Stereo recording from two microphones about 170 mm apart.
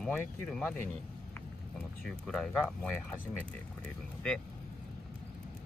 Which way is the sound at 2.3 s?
Centre (ahead or behind).